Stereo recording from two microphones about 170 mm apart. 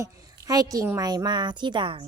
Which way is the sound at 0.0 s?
20° right (ahead or behind).